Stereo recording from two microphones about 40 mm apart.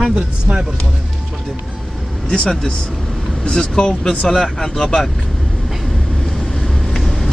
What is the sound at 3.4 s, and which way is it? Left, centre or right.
Speech, centre.